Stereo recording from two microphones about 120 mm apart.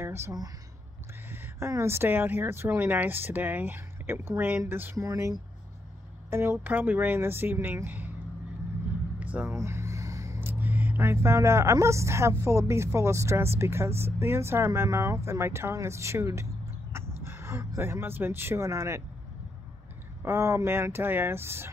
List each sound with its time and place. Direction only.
0.0 s speech: 20° right (ahead or behind)
4.9 s speech: 25° right (ahead or behind)
9.2 s a sound: 10° right (ahead or behind)
9.5 s speech: 20° right (ahead or behind)
20.2 s speech: 20° right (ahead or behind)